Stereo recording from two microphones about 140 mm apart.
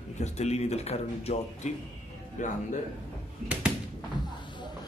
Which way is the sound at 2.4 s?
60° left (ahead or behind).